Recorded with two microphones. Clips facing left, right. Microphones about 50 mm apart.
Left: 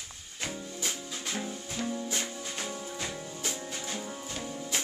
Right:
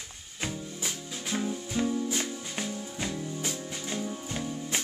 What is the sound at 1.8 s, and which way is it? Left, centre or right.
Music, right.